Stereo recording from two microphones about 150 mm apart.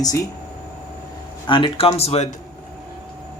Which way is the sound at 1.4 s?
35° left (ahead or behind).